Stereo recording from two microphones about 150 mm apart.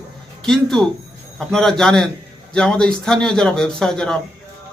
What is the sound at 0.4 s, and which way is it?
A man's voice, 5° left (ahead or behind).